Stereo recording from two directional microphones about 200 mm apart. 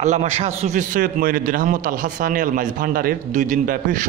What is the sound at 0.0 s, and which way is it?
A man's voice, 35° right (ahead or behind).